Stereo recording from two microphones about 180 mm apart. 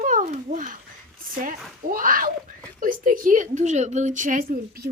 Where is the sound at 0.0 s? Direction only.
45° right (ahead or behind).